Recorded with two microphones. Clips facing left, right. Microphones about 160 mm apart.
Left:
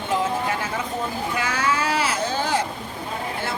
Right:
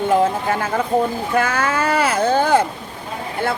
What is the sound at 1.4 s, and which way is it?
Boat, 55° right (ahead or behind).